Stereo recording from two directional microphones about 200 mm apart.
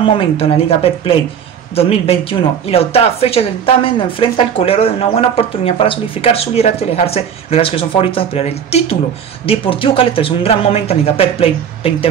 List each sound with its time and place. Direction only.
0.0 s a woman's voice: 30° left (ahead or behind)